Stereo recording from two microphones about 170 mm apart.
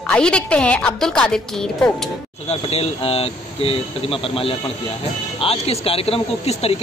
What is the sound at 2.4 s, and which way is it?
Speech, 35° left (ahead or behind).